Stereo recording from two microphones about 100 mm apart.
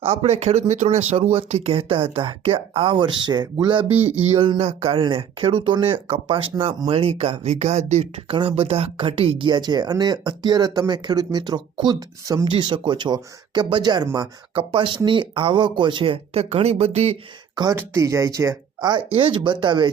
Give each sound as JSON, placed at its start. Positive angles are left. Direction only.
{"t": 0.0, "sound": "speech", "side_deg": -80}
{"t": 1.1, "sound": "speech", "side_deg": -75}
{"t": 3.8, "sound": "a sound", "side_deg": -20}
{"t": 4.4, "sound": "speech", "side_deg": -70}
{"t": 8.3, "sound": "speech", "side_deg": -65}
{"t": 12.5, "sound": "speech", "side_deg": -50}
{"t": 14.5, "sound": "speech", "side_deg": -60}
{"t": 17.5, "sound": "speech", "side_deg": -45}